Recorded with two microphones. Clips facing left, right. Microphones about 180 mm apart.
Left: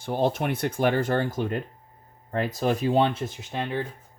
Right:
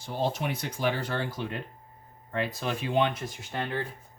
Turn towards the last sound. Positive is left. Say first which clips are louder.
# left 3 dB
turn(degrees=15)  # may be behind; listen again after turning